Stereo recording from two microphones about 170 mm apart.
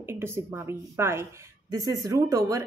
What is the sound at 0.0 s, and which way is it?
A woman's voice, 15° right (ahead or behind).